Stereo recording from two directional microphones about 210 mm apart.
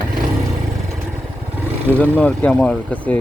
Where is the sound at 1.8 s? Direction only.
5° left (ahead or behind).